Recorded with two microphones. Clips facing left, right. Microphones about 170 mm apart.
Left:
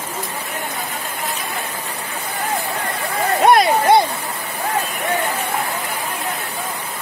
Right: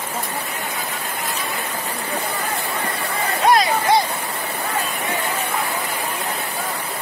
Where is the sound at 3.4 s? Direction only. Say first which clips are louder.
Left 3 dB; 60° left (ahead or behind).